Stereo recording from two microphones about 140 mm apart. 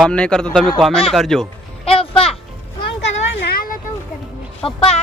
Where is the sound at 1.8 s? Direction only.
40° left (ahead or behind).